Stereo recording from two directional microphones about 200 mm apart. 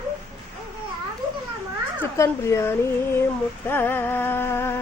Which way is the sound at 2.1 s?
15° left (ahead or behind).